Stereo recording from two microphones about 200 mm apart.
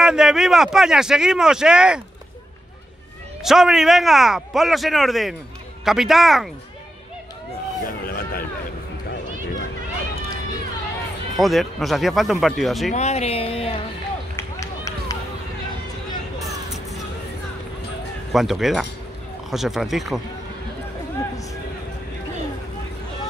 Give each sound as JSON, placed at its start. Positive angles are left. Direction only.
{"t": 0.0, "sound": "speech", "side_deg": -5}
{"t": 3.4, "sound": "speech", "side_deg": 0}
{"t": 8.1, "sound": "vehicle", "side_deg": 50}
{"t": 11.3, "sound": "speech", "side_deg": 0}
{"t": 12.9, "sound": "speech", "side_deg": 35}
{"t": 14.3, "sound": "run", "side_deg": 15}
{"t": 16.6, "sound": "music", "side_deg": 0}
{"t": 18.3, "sound": "speech", "side_deg": 0}